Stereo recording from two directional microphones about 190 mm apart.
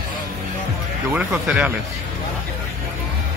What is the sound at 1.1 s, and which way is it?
Speech, 5° right (ahead or behind).